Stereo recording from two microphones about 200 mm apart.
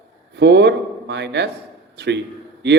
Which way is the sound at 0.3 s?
60° right (ahead or behind).